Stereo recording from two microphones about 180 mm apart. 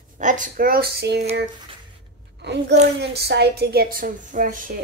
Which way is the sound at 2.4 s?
70° right (ahead or behind).